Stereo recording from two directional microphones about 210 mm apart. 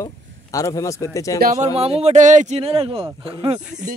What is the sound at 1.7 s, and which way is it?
A man's voice, 30° right (ahead or behind).